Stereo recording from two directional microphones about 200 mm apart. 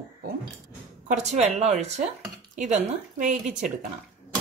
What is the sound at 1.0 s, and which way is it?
A woman's voice, 35° right (ahead or behind).